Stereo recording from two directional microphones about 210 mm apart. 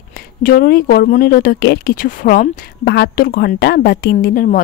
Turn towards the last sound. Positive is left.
turn(degrees=45)  # may be behind; listen again after turning